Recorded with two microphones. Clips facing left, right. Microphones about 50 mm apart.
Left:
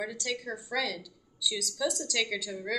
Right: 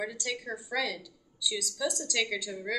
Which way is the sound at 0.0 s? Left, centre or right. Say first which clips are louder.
Even; centre.